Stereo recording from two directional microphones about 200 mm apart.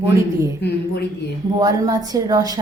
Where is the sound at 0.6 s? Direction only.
50° left (ahead or behind).